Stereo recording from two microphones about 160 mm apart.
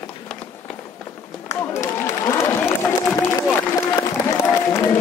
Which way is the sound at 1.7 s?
15° left (ahead or behind).